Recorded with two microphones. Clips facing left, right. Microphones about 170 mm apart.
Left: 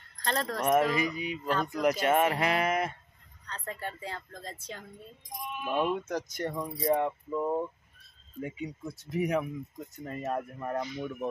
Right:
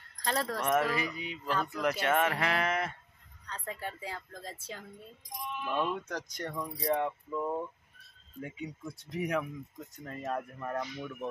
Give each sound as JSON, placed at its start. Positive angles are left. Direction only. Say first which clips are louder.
{"t": 0.2, "sound": "speech", "louder": "left 1 dB", "side_deg": -5}
{"t": 0.6, "sound": "speech", "louder": "left 6 dB", "side_deg": 15}
{"t": 3.4, "sound": "speech", "louder": "left 1 dB", "side_deg": -5}
{"t": 5.5, "sound": "speech", "louder": "left 3 dB", "side_deg": 10}